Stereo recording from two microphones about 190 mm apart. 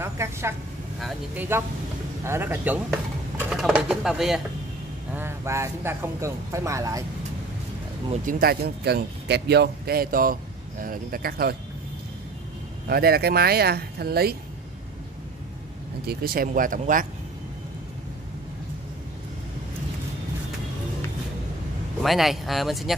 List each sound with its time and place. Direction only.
0.0 s speech: 15° right (ahead or behind)
5.1 s speech: 15° right (ahead or behind)
8.1 s speech: 50° right (ahead or behind)
12.8 s speech: 55° right (ahead or behind)
16.1 s speech: 50° right (ahead or behind)
22.0 s speech: centre (ahead or behind)